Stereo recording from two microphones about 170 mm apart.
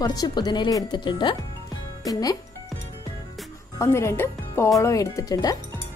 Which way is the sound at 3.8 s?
15° left (ahead or behind).